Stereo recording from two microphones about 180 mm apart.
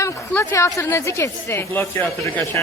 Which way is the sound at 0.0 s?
15° left (ahead or behind).